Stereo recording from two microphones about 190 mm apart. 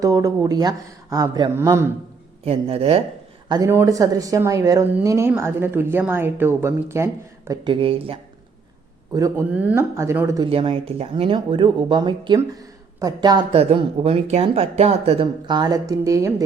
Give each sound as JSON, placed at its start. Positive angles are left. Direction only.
{"t": 0.0, "sound": "speech", "side_deg": -20}
{"t": 2.4, "sound": "speech", "side_deg": -30}
{"t": 3.5, "sound": "a woman's voice", "side_deg": -15}
{"t": 9.5, "sound": "speech", "side_deg": -10}